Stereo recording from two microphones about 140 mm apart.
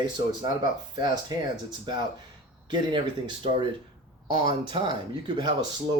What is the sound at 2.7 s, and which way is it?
Speech, 35° right (ahead or behind).